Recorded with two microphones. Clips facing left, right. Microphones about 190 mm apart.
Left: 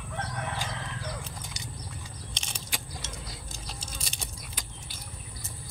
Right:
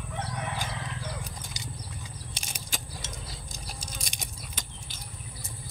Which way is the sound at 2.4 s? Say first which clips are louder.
Even; 10° right (ahead or behind).